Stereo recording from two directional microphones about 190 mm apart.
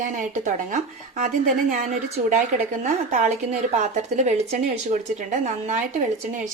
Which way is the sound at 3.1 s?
40° right (ahead or behind).